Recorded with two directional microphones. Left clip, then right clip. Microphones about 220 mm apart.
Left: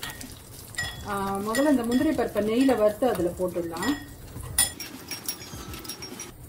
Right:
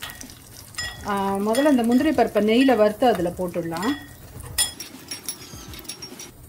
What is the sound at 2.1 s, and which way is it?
Speech, 55° right (ahead or behind).